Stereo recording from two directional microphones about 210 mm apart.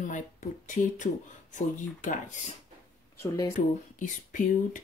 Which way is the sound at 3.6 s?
35° left (ahead or behind).